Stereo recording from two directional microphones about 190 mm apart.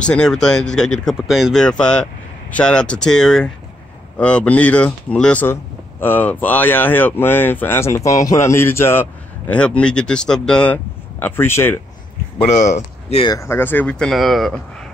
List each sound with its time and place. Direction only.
0.0 s speech: 5° left (ahead or behind)
12.4 s speech: 40° left (ahead or behind)
13.3 s speech: 15° left (ahead or behind)